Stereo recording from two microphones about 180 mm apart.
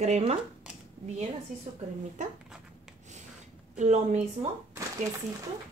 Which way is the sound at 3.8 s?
40° right (ahead or behind).